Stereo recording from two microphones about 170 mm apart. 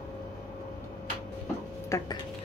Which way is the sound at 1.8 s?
20° left (ahead or behind).